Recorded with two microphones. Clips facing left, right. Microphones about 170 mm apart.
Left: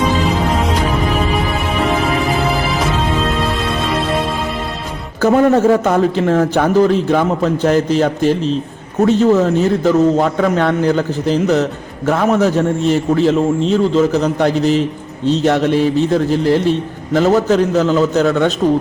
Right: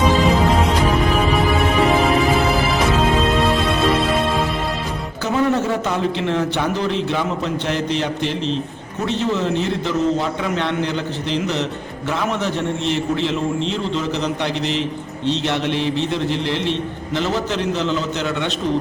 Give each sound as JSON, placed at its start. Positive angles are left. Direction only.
{"t": 0.3, "sound": "music", "side_deg": 0}
{"t": 1.8, "sound": "music", "side_deg": 0}
{"t": 5.2, "sound": "a man's voice", "side_deg": 50}